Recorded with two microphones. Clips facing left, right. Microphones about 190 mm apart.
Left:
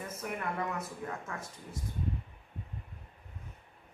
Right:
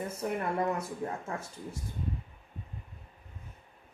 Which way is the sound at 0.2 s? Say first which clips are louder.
Right 5 dB; 30° right (ahead or behind).